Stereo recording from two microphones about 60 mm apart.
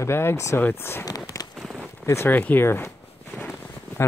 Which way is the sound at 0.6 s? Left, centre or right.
Left.